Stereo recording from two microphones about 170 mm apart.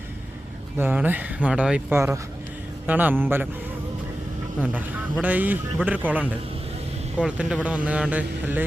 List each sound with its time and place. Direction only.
0.8 s speech: 10° right (ahead or behind)
5.2 s speech: 10° right (ahead or behind)